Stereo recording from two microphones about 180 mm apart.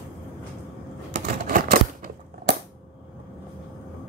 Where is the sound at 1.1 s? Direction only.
50° right (ahead or behind).